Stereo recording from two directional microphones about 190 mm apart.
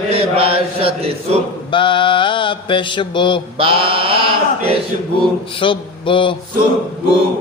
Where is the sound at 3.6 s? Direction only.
30° right (ahead or behind).